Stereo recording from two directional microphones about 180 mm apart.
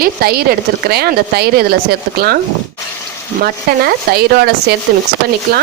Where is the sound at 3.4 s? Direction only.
60° right (ahead or behind).